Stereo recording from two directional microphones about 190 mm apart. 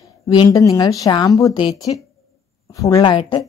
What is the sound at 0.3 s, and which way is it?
A woman's voice, 20° left (ahead or behind).